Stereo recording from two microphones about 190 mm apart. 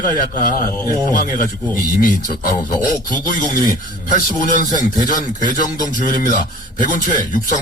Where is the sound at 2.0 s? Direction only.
45° left (ahead or behind).